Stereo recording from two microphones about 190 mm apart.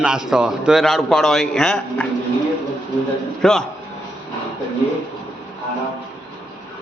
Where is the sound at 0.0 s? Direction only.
5° right (ahead or behind).